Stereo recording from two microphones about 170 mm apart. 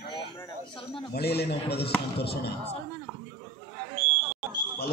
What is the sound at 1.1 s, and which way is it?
Speech, 70° left (ahead or behind).